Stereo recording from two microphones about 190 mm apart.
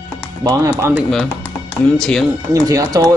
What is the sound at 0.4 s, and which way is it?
Speech, 15° right (ahead or behind).